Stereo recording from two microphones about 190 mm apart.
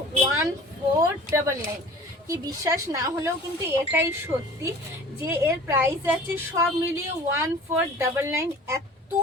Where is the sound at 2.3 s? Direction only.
20° right (ahead or behind).